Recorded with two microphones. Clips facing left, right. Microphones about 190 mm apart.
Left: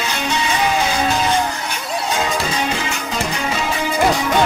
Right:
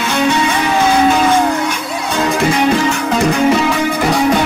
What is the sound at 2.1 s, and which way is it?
Music, 60° right (ahead or behind).